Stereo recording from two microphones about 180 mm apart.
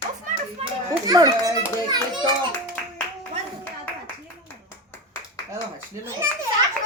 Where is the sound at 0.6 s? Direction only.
35° right (ahead or behind).